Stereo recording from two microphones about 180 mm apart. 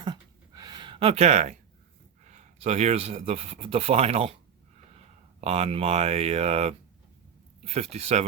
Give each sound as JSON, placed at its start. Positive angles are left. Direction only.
{"t": 0.0, "sound": "a sound", "side_deg": -25}
{"t": 2.2, "sound": "speech", "side_deg": -40}
{"t": 5.4, "sound": "speech", "side_deg": -35}